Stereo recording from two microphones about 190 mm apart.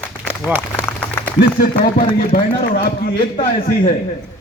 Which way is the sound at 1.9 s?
50° left (ahead or behind).